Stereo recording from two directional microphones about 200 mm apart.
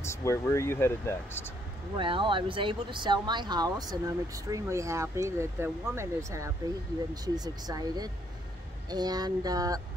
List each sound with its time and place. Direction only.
0.0 s speech: 15° left (ahead or behind)
2.0 s speech: 25° right (ahead or behind)